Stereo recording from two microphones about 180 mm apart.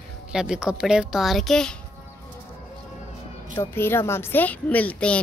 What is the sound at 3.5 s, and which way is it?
A woman's voice, 15° left (ahead or behind).